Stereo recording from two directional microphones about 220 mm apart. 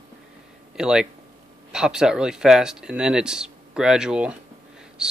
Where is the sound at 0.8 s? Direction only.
5° right (ahead or behind).